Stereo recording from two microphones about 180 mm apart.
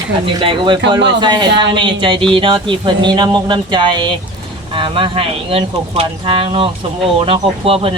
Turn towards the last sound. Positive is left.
turn(degrees=-30)  # may be behind; listen again after turning